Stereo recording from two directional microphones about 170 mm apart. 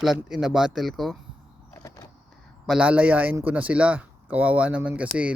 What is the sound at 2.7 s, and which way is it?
Speech, 5° right (ahead or behind).